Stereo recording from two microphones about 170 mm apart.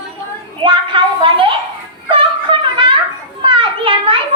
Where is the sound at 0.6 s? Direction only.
30° right (ahead or behind).